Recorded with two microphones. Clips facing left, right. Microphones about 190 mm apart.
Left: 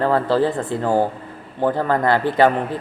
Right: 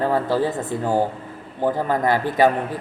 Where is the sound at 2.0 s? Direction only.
15° right (ahead or behind).